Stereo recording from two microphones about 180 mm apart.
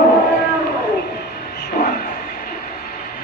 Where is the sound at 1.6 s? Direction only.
55° left (ahead or behind).